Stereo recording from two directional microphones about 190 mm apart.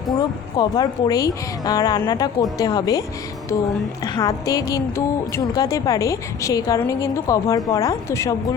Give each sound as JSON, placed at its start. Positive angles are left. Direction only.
{"t": 0.1, "sound": "speech", "side_deg": 20}
{"t": 4.0, "sound": "speech", "side_deg": 20}